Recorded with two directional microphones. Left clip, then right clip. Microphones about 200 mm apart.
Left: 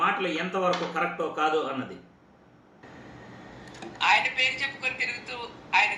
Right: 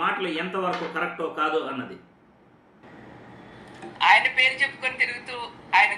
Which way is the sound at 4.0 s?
20° right (ahead or behind).